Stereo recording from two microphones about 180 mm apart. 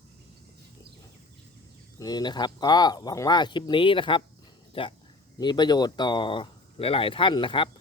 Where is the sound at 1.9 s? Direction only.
20° left (ahead or behind).